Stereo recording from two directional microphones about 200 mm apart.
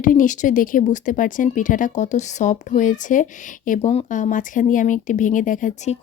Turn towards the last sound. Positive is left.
turn(degrees=35)  # may be behind; listen again after turning